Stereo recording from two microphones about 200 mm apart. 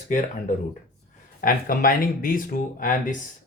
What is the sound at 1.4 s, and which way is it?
Speech, 45° left (ahead or behind).